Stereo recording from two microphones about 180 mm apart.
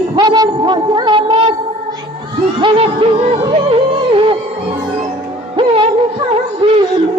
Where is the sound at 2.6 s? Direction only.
30° right (ahead or behind).